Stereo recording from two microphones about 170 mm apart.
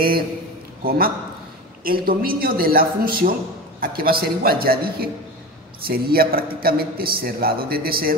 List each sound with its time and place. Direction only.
0.8 s a man's voice: 60° right (ahead or behind)